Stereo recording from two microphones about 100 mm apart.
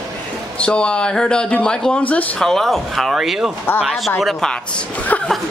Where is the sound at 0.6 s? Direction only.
10° left (ahead or behind).